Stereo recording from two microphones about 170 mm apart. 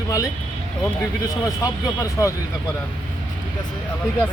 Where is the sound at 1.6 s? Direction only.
20° left (ahead or behind).